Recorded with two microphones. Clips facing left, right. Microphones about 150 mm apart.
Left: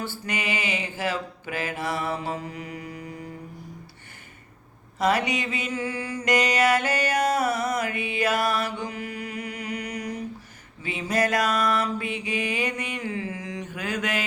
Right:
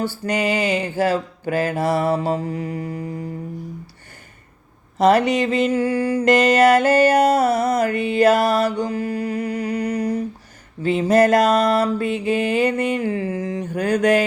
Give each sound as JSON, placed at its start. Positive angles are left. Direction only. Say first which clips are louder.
{"t": 0.3, "sound": "mantra", "louder": "right 10 dB", "side_deg": -45}
{"t": 4.9, "sound": "mantra", "louder": "right 8 dB", "side_deg": -50}
{"t": 5.7, "sound": "mantra", "louder": "right 11 dB", "side_deg": -35}
{"t": 6.2, "sound": "mantra", "louder": "right 7 dB", "side_deg": -50}
{"t": 8.9, "sound": "music", "louder": "right 10 dB", "side_deg": -30}
{"t": 10.8, "sound": "mantra", "louder": "right 10 dB", "side_deg": -50}
{"t": 11.7, "sound": "mantra", "louder": "right 7 dB", "side_deg": -35}
{"t": 12.0, "sound": "mantra", "louder": "right 9 dB", "side_deg": -50}
{"t": 13.0, "sound": "mantra", "louder": "right 9 dB", "side_deg": -35}